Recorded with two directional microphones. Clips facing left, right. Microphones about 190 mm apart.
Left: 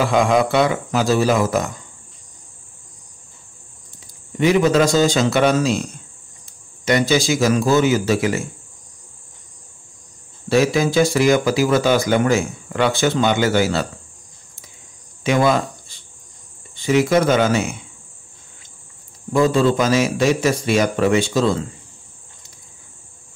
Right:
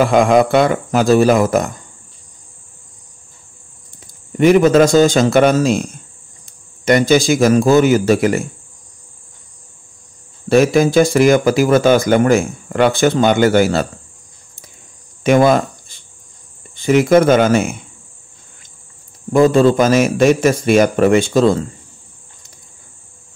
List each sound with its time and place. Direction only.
0.0 s speech: 50° right (ahead or behind)
4.4 s speech: 50° right (ahead or behind)
10.5 s speech: 50° right (ahead or behind)
15.2 s speech: 50° right (ahead or behind)
19.5 s speech: 50° right (ahead or behind)